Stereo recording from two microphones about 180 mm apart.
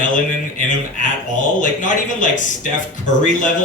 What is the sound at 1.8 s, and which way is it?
Speech, 45° left (ahead or behind).